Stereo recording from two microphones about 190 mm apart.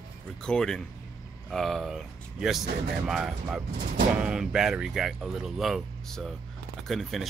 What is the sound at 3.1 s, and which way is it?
Speech, 5° right (ahead or behind).